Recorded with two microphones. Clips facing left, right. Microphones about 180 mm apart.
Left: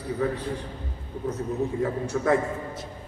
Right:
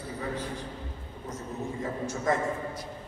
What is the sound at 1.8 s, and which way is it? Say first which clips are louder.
Speech: left 6 dB; 65° left (ahead or behind).